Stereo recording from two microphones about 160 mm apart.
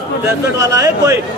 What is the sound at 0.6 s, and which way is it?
Speech, 20° right (ahead or behind).